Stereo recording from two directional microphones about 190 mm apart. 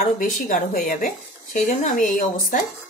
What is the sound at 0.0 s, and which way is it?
Speech, 50° left (ahead or behind).